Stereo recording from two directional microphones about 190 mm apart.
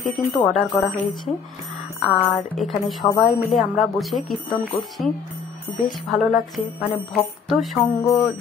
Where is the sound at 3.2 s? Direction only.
Centre (ahead or behind).